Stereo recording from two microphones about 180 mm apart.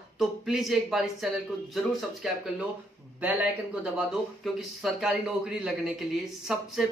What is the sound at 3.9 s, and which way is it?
Speech, centre (ahead or behind).